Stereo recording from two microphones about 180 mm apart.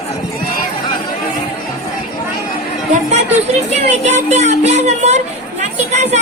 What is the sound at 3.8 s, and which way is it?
Speech, 40° right (ahead or behind).